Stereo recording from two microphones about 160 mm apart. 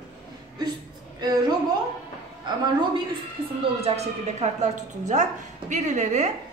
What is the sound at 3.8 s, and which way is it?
A woman's voice, 40° right (ahead or behind).